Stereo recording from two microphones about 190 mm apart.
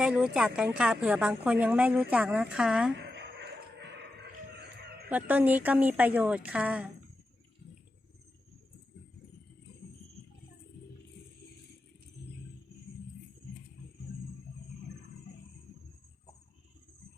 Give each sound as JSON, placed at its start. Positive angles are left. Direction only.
{"t": 0.0, "sound": "a woman's voice", "side_deg": -5}
{"t": 3.0, "sound": "music", "side_deg": -65}
{"t": 5.0, "sound": "a woman's voice", "side_deg": -10}
{"t": 14.0, "sound": "a sound", "side_deg": 55}